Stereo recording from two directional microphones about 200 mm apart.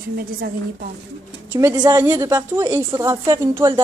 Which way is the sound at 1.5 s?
20° right (ahead or behind).